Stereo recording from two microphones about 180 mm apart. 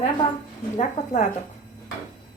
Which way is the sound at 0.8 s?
40° left (ahead or behind).